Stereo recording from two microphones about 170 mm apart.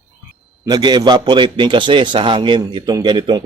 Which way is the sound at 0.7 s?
25° right (ahead or behind).